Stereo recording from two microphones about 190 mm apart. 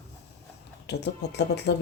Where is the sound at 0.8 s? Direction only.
65° left (ahead or behind).